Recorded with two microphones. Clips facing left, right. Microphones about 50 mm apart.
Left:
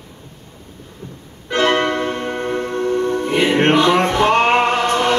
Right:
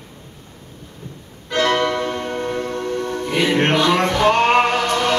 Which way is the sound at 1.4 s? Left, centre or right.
Left.